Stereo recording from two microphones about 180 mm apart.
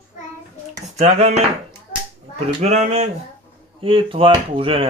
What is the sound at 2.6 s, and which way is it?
Speech, 40° right (ahead or behind).